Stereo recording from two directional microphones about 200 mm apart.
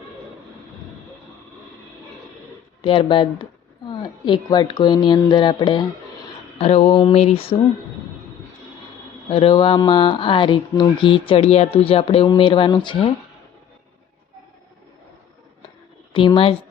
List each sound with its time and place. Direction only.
2.8 s speech: 25° left (ahead or behind)
9.3 s speech: 25° left (ahead or behind)
16.1 s speech: 25° left (ahead or behind)